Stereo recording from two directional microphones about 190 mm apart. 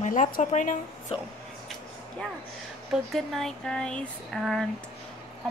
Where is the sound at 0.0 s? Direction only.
40° left (ahead or behind).